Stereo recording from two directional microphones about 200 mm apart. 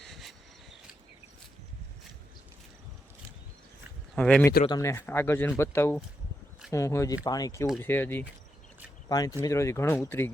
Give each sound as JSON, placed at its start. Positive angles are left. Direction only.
{"t": 0.0, "sound": "cricket", "side_deg": 0}
{"t": 4.1, "sound": "speech", "side_deg": 5}
{"t": 4.6, "sound": "speech", "side_deg": 20}